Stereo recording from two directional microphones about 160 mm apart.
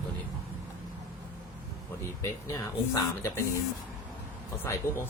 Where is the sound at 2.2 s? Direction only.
20° left (ahead or behind).